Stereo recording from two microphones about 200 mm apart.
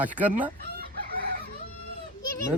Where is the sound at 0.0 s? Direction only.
10° right (ahead or behind).